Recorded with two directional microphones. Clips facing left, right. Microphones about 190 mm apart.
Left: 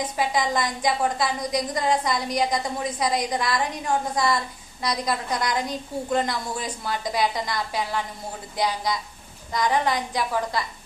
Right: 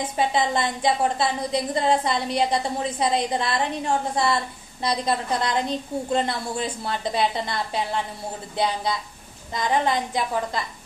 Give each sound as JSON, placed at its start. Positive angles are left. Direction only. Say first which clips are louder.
{"t": 0.0, "sound": "a woman's voice", "louder": "right 2 dB", "side_deg": -25}
{"t": 9.5, "sound": "a woman's voice", "louder": "even", "side_deg": -25}